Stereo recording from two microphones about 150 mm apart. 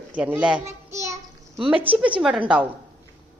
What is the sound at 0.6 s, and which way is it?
Child singing, 20° right (ahead or behind).